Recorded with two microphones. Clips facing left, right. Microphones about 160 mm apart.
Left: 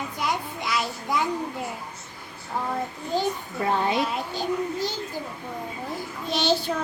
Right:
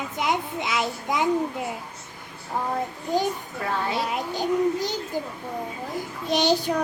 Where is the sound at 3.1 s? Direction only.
15° right (ahead or behind).